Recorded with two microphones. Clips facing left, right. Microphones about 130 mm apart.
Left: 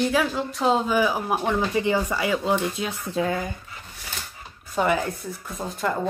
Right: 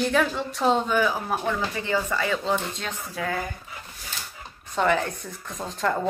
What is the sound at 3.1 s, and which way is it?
Speech, 20° left (ahead or behind).